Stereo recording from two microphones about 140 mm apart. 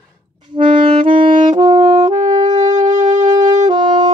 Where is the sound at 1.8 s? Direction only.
45° right (ahead or behind).